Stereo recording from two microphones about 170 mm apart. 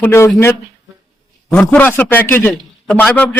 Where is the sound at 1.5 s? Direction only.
10° left (ahead or behind).